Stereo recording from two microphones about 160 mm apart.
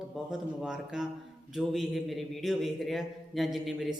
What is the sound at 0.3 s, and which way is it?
A man's voice, 5° right (ahead or behind).